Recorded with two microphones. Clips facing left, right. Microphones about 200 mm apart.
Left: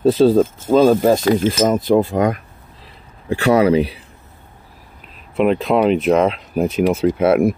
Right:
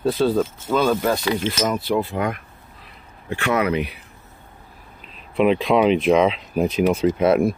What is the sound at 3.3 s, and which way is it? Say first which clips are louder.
Speech: left 7 dB; 35° left (ahead or behind).